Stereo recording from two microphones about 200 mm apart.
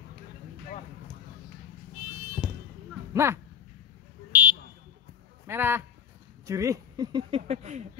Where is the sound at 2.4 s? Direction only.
5° right (ahead or behind).